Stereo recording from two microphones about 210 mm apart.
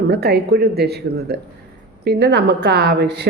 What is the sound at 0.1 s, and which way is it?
A woman's voice, 50° right (ahead or behind).